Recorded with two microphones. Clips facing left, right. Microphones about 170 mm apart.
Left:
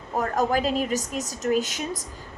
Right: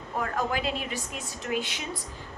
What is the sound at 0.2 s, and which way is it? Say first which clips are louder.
A woman's voice: left 6 dB; 40° left (ahead or behind).